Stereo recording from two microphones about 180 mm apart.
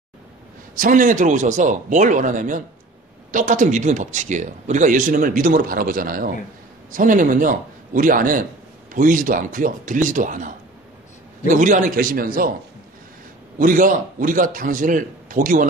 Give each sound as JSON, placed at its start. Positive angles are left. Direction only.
{"t": 0.7, "sound": "a man's voice", "side_deg": -45}
{"t": 13.6, "sound": "a man's voice", "side_deg": -50}